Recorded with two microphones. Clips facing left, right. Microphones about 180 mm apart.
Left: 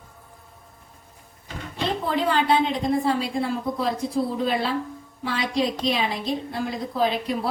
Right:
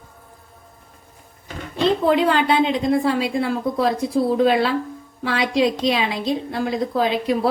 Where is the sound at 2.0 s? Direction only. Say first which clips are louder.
Right 2 dB; 90° right.